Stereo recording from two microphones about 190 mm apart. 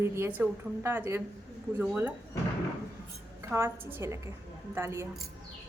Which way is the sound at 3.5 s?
15° right (ahead or behind).